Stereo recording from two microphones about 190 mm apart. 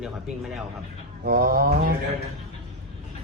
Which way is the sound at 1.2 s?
50° right (ahead or behind).